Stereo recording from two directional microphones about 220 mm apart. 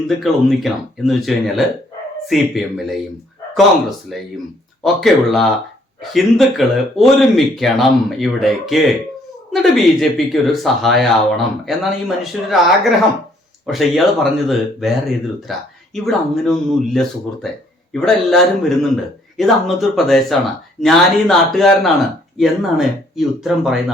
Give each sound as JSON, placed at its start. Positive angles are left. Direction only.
{"t": 0.2, "sound": "speech", "side_deg": 0}